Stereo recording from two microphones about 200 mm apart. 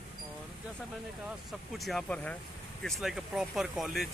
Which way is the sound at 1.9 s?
5° left (ahead or behind).